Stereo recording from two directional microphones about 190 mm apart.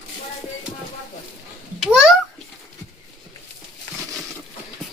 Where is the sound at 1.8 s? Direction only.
5° right (ahead or behind).